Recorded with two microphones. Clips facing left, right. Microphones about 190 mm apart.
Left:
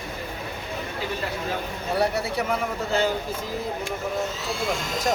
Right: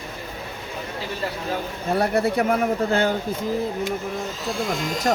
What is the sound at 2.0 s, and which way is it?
Speech, 55° right (ahead or behind).